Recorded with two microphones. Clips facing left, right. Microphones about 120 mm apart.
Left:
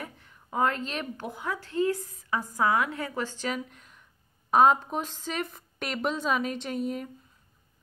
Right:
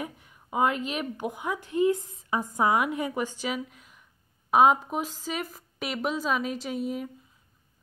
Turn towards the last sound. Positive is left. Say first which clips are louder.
# even
turn(degrees=-5)  # may be behind; listen again after turning